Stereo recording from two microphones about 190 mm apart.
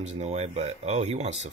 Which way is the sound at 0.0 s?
35° right (ahead or behind).